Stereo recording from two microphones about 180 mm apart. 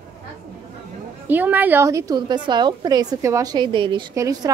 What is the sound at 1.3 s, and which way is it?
A woman's voice, 10° right (ahead or behind).